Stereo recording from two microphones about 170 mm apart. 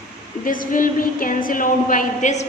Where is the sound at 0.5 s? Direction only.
55° left (ahead or behind).